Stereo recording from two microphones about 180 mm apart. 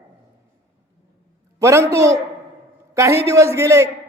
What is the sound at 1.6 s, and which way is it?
Speech, 15° right (ahead or behind).